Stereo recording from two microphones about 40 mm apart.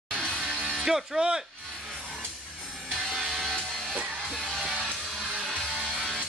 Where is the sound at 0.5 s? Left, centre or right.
Centre.